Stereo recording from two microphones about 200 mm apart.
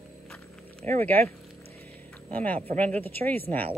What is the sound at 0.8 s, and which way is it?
Speech, 35° right (ahead or behind).